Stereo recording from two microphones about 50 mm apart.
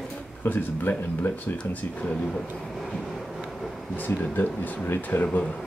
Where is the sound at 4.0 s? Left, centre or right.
Left.